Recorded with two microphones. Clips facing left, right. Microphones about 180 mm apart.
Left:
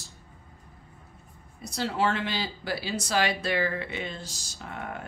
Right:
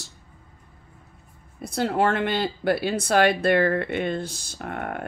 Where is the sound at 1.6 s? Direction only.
55° right (ahead or behind).